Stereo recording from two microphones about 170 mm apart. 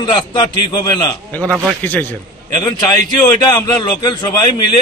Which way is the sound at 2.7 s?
25° left (ahead or behind).